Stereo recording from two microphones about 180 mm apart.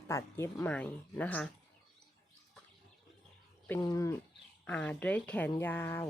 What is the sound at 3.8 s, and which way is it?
Speech, 15° left (ahead or behind).